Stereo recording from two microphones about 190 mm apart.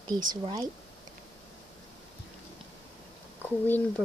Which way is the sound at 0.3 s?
20° right (ahead or behind).